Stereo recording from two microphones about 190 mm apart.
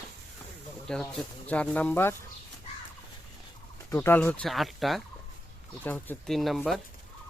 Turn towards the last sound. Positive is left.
turn(degrees=0)  # may be behind; listen again after turning